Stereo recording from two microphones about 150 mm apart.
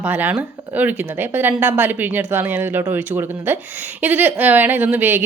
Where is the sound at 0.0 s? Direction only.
10° right (ahead or behind).